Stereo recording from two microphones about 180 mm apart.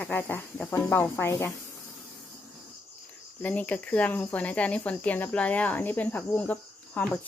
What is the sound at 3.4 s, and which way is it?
Speech, 10° left (ahead or behind).